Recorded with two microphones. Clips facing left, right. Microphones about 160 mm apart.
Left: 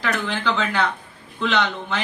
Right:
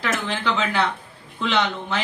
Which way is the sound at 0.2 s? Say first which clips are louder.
Left 1 dB; centre (ahead or behind).